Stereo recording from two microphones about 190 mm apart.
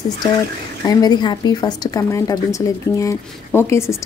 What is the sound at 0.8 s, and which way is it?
Speech, 20° left (ahead or behind).